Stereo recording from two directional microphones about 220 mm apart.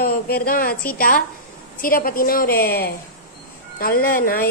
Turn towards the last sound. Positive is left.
turn(degrees=40)  # may be behind; listen again after turning